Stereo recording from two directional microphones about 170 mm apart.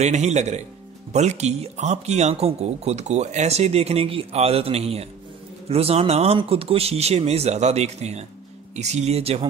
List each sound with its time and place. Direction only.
0.0 s speech: 40° right (ahead or behind)